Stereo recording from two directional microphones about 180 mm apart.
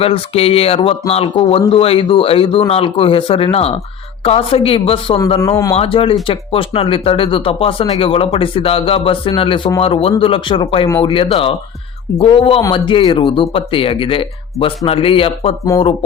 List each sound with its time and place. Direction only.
0.0 s speech: 30° left (ahead or behind)